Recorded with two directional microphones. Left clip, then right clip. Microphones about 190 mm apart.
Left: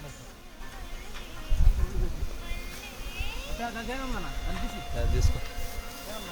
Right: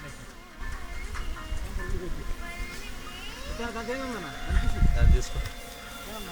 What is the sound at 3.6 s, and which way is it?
Speech, 15° right (ahead or behind).